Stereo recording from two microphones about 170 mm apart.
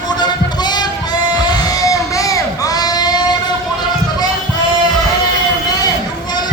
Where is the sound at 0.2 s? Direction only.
25° left (ahead or behind).